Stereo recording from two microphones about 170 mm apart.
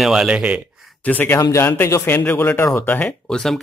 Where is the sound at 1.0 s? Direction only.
10° left (ahead or behind).